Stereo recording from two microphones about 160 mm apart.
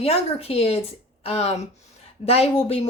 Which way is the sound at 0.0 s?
40° left (ahead or behind).